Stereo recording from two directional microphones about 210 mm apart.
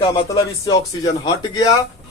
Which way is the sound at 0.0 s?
20° left (ahead or behind).